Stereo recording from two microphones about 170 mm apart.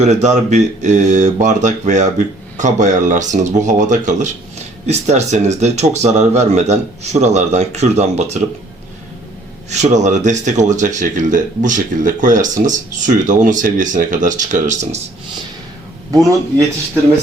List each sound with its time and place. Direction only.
0.0 s speech: 45° right (ahead or behind)
9.6 s speech: 40° right (ahead or behind)